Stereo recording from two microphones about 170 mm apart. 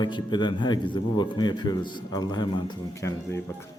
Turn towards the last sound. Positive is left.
turn(degrees=15)  # may be behind; listen again after turning